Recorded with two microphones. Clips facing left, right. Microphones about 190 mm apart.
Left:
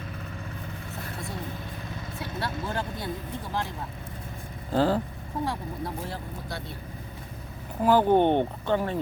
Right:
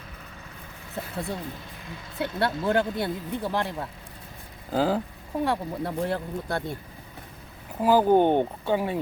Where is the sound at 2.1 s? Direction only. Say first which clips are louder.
Right 7 dB; 65° right (ahead or behind).